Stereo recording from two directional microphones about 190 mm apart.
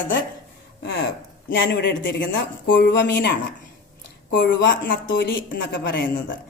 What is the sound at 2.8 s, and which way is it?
Speech, 60° left (ahead or behind).